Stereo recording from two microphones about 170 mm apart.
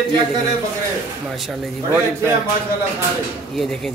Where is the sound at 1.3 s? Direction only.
Centre (ahead or behind).